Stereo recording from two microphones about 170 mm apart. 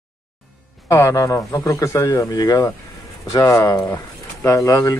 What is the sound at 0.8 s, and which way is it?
Speech, 20° left (ahead or behind).